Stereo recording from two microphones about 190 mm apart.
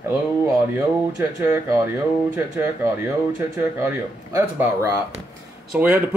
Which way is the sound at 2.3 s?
10° right (ahead or behind).